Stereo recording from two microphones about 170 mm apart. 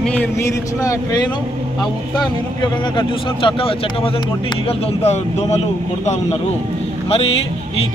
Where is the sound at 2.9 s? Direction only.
30° left (ahead or behind).